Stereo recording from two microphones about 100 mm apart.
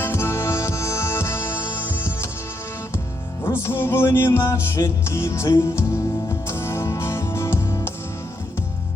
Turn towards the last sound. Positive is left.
turn(degrees=25)  # may be behind; listen again after turning